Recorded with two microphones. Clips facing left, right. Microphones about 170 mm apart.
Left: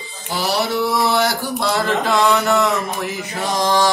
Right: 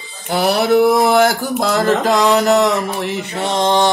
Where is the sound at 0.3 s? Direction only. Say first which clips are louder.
Right 7 dB; 60° right (ahead or behind).